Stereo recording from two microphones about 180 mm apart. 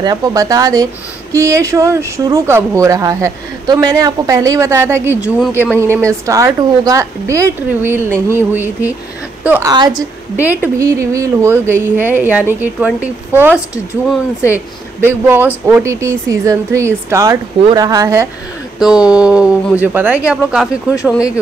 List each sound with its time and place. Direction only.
0.0 s a woman's voice: 20° right (ahead or behind)
9.7 s speech: 20° right (ahead or behind)
10.3 s speech: 10° right (ahead or behind)
18.8 s speech: 5° right (ahead or behind)
20.9 s speech: 15° left (ahead or behind)